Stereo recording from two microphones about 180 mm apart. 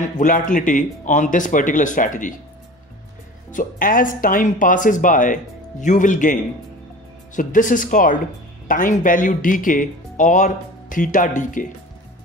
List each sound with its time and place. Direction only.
0.2 s speech: 45° left (ahead or behind)
3.5 s speech: 50° left (ahead or behind)